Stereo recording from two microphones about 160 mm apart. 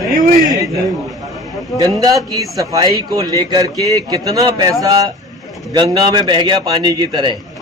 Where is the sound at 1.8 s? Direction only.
20° right (ahead or behind).